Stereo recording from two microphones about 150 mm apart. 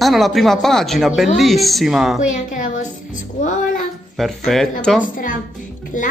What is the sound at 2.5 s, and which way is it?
Music, 60° left (ahead or behind).